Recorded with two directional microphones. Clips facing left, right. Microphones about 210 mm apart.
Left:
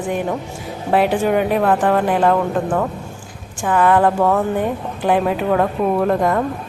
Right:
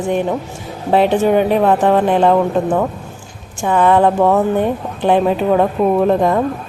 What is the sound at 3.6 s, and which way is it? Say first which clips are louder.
Speech: right 2 dB; 25° right (ahead or behind).